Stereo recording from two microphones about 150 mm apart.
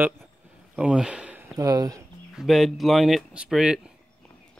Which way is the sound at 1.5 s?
25° right (ahead or behind).